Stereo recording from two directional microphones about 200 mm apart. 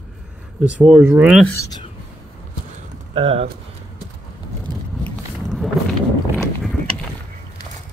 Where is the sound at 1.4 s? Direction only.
10° left (ahead or behind).